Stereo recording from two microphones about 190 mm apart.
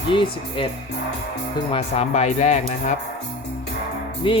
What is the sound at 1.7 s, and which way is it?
Speech, 30° left (ahead or behind).